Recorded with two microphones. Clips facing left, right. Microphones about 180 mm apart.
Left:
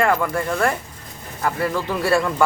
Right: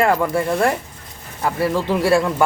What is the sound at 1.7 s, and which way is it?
Speech, 25° right (ahead or behind).